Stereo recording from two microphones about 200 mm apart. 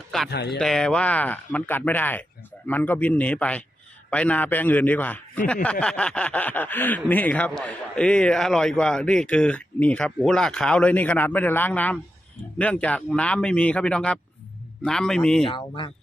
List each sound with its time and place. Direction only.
0.3 s speech: 55° left (ahead or behind)
0.6 s speech: 5° left (ahead or behind)
15.4 s speech: 25° left (ahead or behind)